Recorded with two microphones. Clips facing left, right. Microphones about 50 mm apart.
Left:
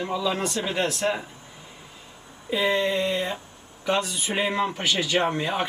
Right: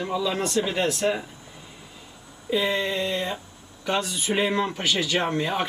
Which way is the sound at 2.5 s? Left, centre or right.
Centre.